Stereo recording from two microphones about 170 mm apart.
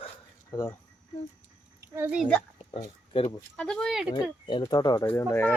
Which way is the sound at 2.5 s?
35° left (ahead or behind).